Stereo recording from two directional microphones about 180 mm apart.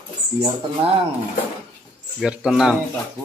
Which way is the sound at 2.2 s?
5° right (ahead or behind).